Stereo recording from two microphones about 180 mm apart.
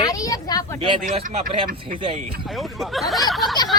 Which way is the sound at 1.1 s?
35° right (ahead or behind).